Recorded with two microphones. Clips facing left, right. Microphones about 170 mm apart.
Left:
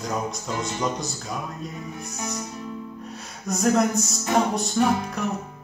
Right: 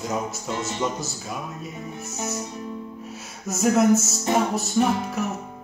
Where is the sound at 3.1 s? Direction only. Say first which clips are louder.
Left 2 dB; 5° right (ahead or behind).